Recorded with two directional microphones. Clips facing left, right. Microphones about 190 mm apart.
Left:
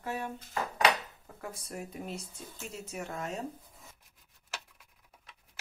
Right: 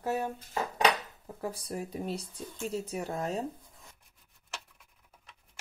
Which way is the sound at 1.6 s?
35° right (ahead or behind).